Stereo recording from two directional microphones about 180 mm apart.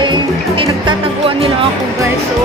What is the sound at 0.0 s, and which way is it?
Music, 25° right (ahead or behind).